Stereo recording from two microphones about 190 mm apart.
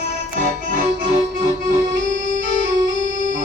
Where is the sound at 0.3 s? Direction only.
45° right (ahead or behind).